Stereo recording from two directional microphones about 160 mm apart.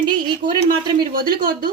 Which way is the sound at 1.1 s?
65° right (ahead or behind).